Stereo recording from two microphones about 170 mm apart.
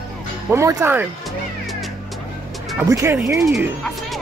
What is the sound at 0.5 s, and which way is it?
Speech, 15° right (ahead or behind).